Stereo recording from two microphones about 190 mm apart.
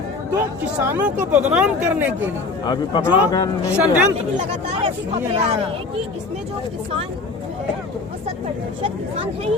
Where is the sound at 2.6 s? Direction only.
25° left (ahead or behind).